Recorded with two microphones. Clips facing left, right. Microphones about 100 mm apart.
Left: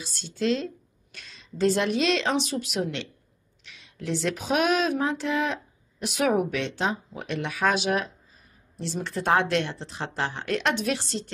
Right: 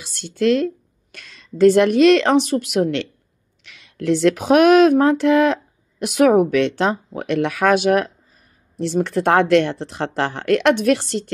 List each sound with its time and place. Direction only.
0.0 s speech: 65° right (ahead or behind)